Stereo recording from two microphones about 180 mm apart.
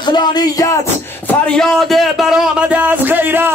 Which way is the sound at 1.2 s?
5° left (ahead or behind).